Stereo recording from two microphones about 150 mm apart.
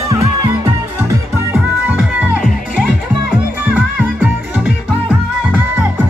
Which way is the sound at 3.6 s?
10° right (ahead or behind).